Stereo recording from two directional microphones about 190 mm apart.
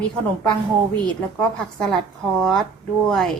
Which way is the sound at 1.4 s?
5° left (ahead or behind).